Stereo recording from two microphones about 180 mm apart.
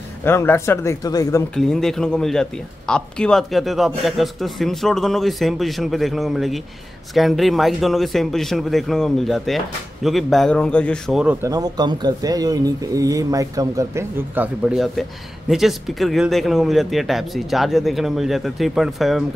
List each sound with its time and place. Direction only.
0.2 s speech: 15° left (ahead or behind)
1.5 s speech: 5° left (ahead or behind)
11.4 s speech: 20° right (ahead or behind); by 19.2 s centre (ahead or behind)